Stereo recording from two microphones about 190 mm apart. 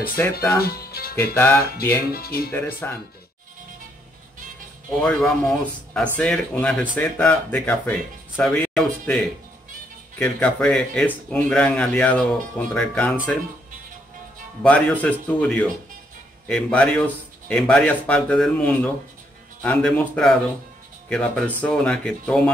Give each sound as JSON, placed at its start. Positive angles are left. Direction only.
{"t": 0.2, "sound": "speech", "side_deg": 10}
{"t": 0.6, "sound": "speech", "side_deg": 55}
{"t": 1.1, "sound": "speech", "side_deg": 10}
{"t": 2.0, "sound": "speech", "side_deg": 55}
{"t": 2.5, "sound": "speech", "side_deg": 10}
{"t": 5.0, "sound": "speech", "side_deg": 5}
{"t": 14.6, "sound": "speech", "side_deg": 5}